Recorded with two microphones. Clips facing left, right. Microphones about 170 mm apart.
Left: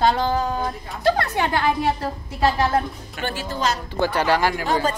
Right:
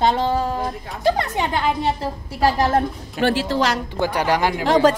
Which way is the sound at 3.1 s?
85° right.